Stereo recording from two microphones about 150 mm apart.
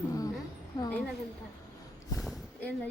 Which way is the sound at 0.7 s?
30° left (ahead or behind).